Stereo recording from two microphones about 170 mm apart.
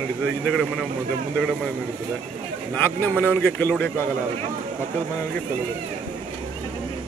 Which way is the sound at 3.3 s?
10° left (ahead or behind).